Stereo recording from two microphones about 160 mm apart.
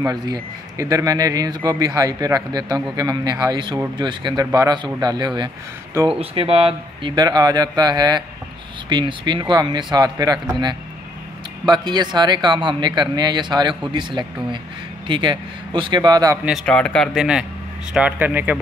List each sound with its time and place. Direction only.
0.0 s speech: 25° right (ahead or behind)
16.6 s speech: 5° left (ahead or behind); by 18.6 s 10° right (ahead or behind)